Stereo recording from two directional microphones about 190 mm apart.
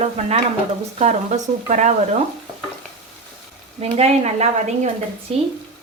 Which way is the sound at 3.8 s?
35° right (ahead or behind).